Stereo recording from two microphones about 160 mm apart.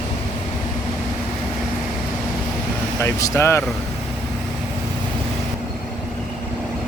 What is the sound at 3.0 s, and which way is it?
Speech, 15° left (ahead or behind).